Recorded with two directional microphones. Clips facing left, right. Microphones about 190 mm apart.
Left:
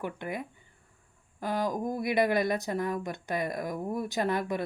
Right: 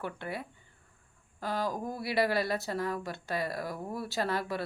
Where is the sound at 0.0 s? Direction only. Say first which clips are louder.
Left 3 dB; 15° left (ahead or behind).